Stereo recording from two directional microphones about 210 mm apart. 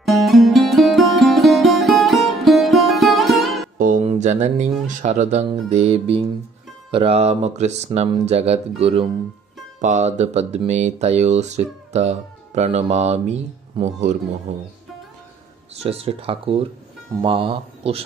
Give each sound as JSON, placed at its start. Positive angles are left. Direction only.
{"t": 0.0, "sound": "music", "side_deg": 0}
{"t": 3.7, "sound": "a sound", "side_deg": -40}
{"t": 4.8, "sound": "speech", "side_deg": -35}
{"t": 15.8, "sound": "speech", "side_deg": -30}